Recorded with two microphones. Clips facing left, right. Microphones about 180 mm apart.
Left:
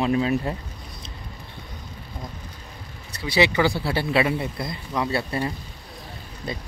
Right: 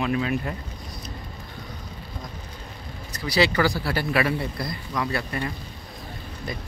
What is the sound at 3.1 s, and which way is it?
Speech, 25° left (ahead or behind).